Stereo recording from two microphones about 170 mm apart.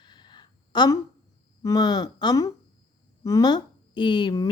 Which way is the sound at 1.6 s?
25° left (ahead or behind).